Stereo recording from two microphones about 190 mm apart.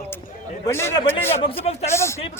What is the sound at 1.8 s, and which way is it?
Speech, 15° left (ahead or behind).